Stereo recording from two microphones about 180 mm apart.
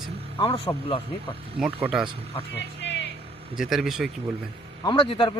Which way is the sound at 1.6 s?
5° right (ahead or behind).